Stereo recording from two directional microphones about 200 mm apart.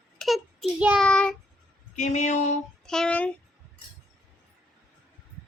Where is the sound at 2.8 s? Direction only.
5° left (ahead or behind).